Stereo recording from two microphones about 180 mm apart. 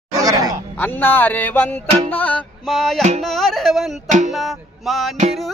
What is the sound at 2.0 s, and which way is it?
Music, 10° left (ahead or behind).